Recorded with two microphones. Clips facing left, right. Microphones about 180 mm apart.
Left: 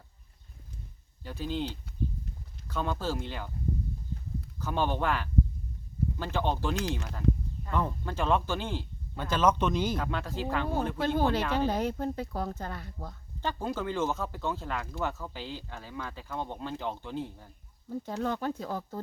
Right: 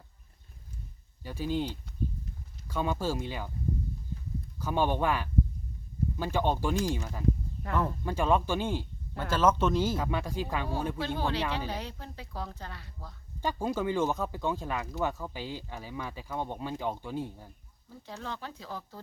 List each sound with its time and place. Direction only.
1.2 s speech: 10° right (ahead or behind)
4.6 s speech: 10° right (ahead or behind)
10.9 s speech: 50° left (ahead or behind)
13.4 s speech: 10° right (ahead or behind)
17.8 s speech: 50° left (ahead or behind)